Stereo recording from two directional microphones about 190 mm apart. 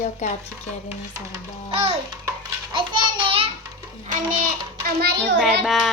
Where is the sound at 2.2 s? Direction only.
25° right (ahead or behind).